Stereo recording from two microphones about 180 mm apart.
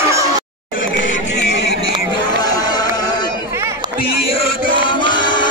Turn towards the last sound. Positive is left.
turn(degrees=25)  # may be behind; listen again after turning